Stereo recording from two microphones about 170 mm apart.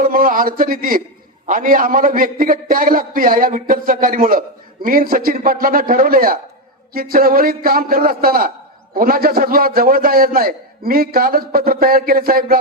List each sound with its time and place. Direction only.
0.0 s a man's voice: 55° right (ahead or behind)